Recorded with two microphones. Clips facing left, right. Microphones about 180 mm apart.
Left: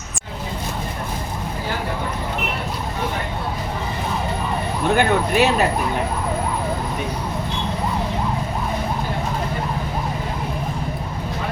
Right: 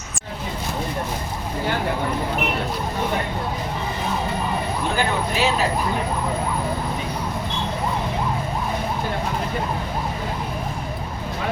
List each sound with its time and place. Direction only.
4.9 s speech: 60° left (ahead or behind)